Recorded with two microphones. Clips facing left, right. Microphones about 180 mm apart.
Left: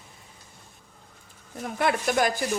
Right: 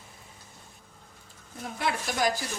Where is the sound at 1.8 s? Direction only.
55° left (ahead or behind).